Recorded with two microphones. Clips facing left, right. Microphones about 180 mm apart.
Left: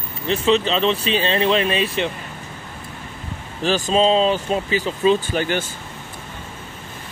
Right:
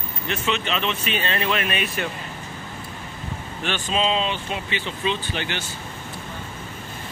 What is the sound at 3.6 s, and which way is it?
Speech, 35° left (ahead or behind).